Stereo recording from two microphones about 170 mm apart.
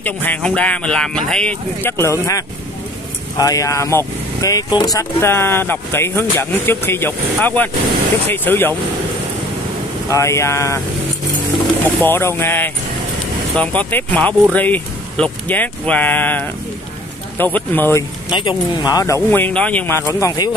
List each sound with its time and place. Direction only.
0.0 s speech: 10° left (ahead or behind)
10.0 s speech: 15° left (ahead or behind)
12.0 s speech: 15° left (ahead or behind)
18.3 s speech: 25° left (ahead or behind)